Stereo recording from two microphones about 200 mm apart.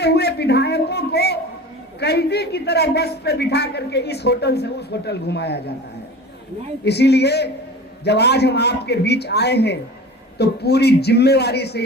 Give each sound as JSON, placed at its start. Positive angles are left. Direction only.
{"t": 0.0, "sound": "a sound", "side_deg": 55}
{"t": 2.0, "sound": "a man's voice", "side_deg": 55}
{"t": 6.8, "sound": "a man's voice", "side_deg": 55}